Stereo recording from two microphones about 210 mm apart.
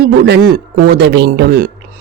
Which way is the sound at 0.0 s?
45° right (ahead or behind).